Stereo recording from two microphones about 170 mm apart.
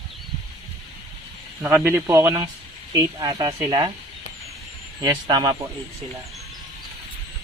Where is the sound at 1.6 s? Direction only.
10° right (ahead or behind).